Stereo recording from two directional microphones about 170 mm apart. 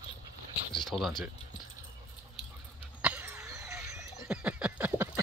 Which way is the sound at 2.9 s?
10° right (ahead or behind).